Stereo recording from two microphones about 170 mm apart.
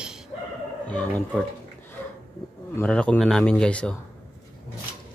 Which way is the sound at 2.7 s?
5° left (ahead or behind).